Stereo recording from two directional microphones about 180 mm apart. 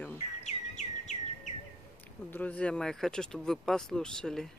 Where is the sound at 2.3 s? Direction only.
10° left (ahead or behind).